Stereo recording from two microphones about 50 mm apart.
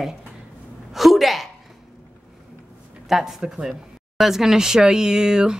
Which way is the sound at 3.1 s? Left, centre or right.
Centre.